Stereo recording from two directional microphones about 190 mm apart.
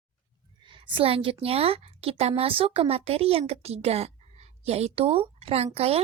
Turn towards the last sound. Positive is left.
turn(degrees=-35)  # may be behind; listen again after turning